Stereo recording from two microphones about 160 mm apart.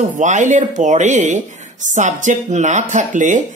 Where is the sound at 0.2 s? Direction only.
50° right (ahead or behind).